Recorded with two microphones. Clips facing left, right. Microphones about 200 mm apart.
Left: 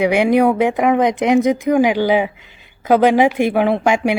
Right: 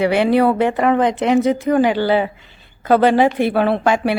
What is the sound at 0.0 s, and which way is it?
Speech, 15° left (ahead or behind).